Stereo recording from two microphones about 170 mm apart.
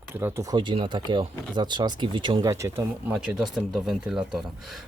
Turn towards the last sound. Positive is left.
turn(degrees=0)  # may be behind; listen again after turning